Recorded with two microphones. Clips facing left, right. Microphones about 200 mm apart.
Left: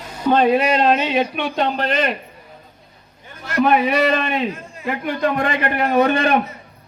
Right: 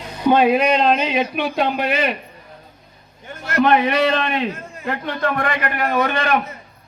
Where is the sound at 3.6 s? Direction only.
5° left (ahead or behind).